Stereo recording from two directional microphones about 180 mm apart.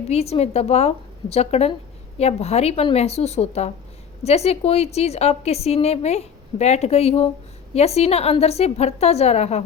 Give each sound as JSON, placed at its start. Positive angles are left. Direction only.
{"t": 0.1, "sound": "a woman's voice", "side_deg": 35}